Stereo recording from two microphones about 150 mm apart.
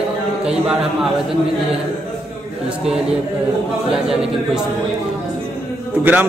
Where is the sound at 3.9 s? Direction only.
5° right (ahead or behind).